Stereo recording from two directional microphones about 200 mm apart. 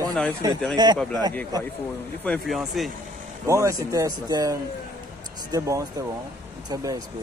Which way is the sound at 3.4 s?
15° right (ahead or behind).